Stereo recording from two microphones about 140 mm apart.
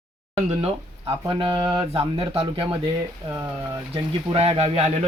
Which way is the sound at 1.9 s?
40° right (ahead or behind).